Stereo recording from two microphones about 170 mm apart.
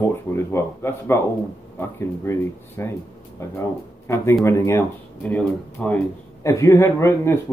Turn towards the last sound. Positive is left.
turn(degrees=15)  # may be behind; listen again after turning